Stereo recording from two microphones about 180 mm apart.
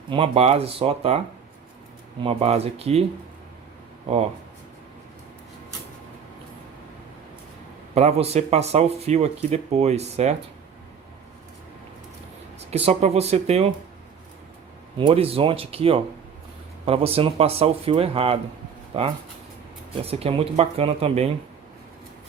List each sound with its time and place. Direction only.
0.1 s speech: 30° right (ahead or behind)
2.2 s speech: 35° right (ahead or behind)
7.9 s speech: 35° right (ahead or behind)
12.5 s speech: 35° right (ahead or behind)
14.9 s speech: 30° right (ahead or behind)
20.0 s speech: 35° right (ahead or behind)